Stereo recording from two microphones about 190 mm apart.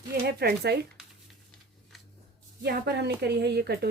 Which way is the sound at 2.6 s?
60° right (ahead or behind).